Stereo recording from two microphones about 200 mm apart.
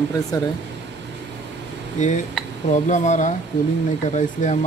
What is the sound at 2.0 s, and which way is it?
Speech, 35° left (ahead or behind).